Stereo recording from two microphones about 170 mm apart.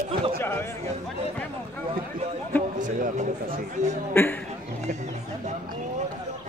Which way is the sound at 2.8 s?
50° right (ahead or behind).